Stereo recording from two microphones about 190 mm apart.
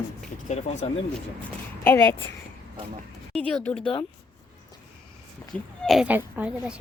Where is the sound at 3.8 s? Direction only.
30° left (ahead or behind).